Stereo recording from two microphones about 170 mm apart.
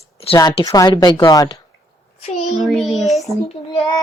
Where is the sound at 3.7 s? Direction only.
25° left (ahead or behind).